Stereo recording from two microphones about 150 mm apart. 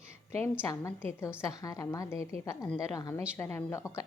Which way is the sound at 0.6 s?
20° left (ahead or behind).